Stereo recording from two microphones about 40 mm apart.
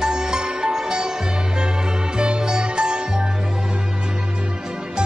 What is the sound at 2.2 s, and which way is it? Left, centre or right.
Music, right.